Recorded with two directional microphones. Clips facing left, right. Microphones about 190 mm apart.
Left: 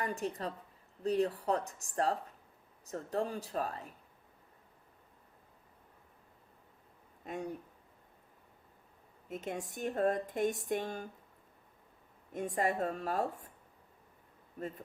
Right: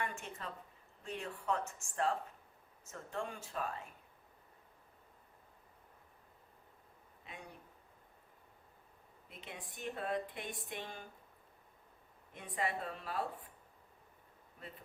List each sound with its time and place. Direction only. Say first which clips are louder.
0.0 s speech: left 7 dB; 35° left (ahead or behind)
7.3 s speech: left 13 dB; 45° left (ahead or behind)
9.3 s speech: left 12 dB; 45° left (ahead or behind)
12.3 s speech: left 6 dB; 45° left (ahead or behind)
14.6 s speech: left 12 dB; 40° left (ahead or behind)